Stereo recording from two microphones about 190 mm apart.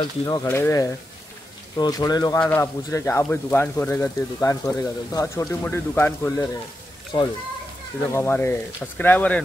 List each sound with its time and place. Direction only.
0.2 s speech: 15° left (ahead or behind)
7.1 s speech: 25° left (ahead or behind)
8.1 s speech: 10° left (ahead or behind)